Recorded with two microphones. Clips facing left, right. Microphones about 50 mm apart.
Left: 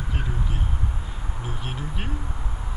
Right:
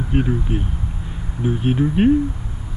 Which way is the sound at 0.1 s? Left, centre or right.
Right.